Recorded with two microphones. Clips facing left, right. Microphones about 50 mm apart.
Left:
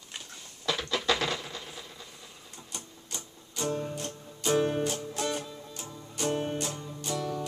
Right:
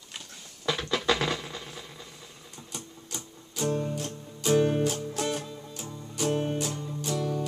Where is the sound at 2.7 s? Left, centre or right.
Centre.